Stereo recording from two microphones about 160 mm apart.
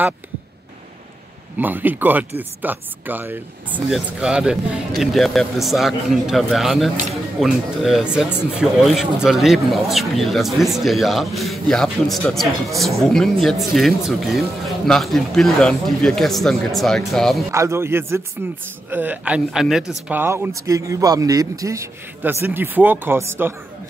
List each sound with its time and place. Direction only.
1.6 s speech: 10° right (ahead or behind)
17.5 s speech: 15° right (ahead or behind)
20.1 s speech: 15° right (ahead or behind)